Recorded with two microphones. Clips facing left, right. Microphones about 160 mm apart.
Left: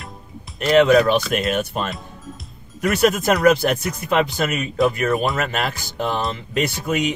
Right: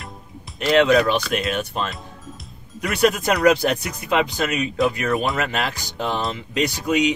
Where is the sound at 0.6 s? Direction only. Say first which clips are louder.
Left 2 dB; centre (ahead or behind).